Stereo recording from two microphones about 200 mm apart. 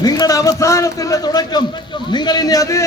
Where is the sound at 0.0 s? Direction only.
20° left (ahead or behind).